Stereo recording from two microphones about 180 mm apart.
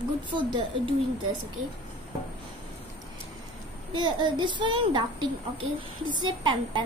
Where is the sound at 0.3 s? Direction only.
25° right (ahead or behind).